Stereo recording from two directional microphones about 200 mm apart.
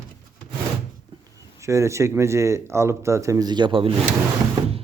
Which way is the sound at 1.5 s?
15° right (ahead or behind).